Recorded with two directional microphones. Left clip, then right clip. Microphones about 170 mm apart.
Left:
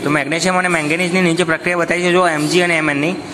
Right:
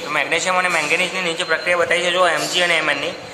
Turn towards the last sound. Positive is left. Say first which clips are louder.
# left 2 dB
turn(degrees=35)  # may be behind; listen again after turning